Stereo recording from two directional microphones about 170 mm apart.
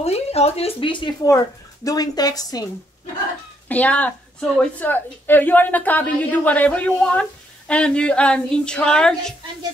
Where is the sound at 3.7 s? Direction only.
10° left (ahead or behind).